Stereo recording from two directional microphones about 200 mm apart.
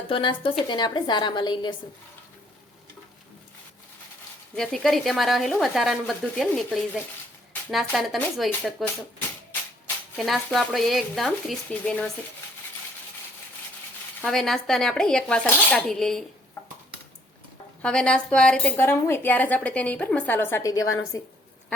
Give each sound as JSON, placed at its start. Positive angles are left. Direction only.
{"t": 0.1, "sound": "a woman's voice", "side_deg": 25}
{"t": 4.5, "sound": "a woman's voice", "side_deg": 0}
{"t": 10.2, "sound": "a woman's voice", "side_deg": 0}
{"t": 14.2, "sound": "a woman's voice", "side_deg": 0}
{"t": 17.8, "sound": "a woman's voice", "side_deg": 5}